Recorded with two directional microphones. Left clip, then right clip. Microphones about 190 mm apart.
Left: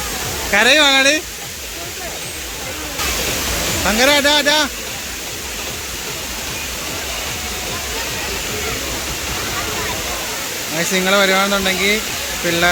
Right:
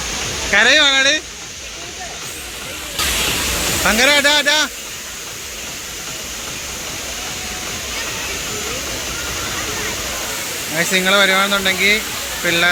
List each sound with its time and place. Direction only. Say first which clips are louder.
0.5 s speech: even; 10° left (ahead or behind)
3.8 s speech: right 1 dB; 5° right (ahead or behind)
10.8 s speech: right 1 dB; centre (ahead or behind)